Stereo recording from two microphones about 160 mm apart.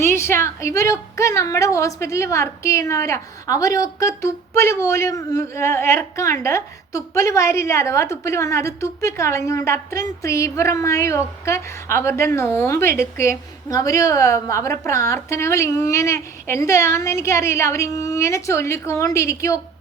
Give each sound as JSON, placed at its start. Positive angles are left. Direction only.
{"t": 0.0, "sound": "a woman's voice", "side_deg": 15}